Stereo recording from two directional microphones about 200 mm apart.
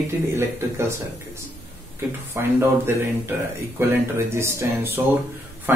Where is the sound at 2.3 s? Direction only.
10° right (ahead or behind).